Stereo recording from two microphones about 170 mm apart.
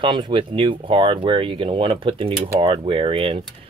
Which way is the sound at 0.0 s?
30° right (ahead or behind).